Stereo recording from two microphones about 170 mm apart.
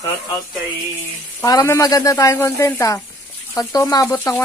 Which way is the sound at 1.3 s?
20° left (ahead or behind).